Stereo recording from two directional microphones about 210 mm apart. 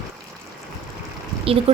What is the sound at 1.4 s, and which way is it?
Speech, 25° right (ahead or behind).